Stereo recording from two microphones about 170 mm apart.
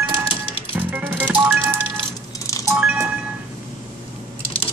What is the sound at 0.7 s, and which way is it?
Music, 10° right (ahead or behind).